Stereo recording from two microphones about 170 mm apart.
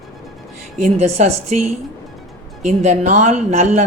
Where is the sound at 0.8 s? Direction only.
40° right (ahead or behind).